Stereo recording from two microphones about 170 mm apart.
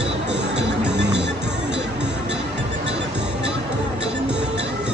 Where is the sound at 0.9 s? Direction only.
90° right.